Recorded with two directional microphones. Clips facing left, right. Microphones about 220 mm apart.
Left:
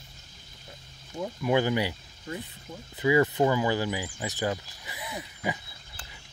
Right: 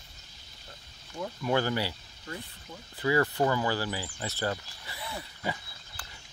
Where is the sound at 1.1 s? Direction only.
15° left (ahead or behind).